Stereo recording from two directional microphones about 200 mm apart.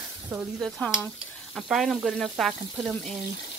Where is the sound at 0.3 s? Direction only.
5° right (ahead or behind).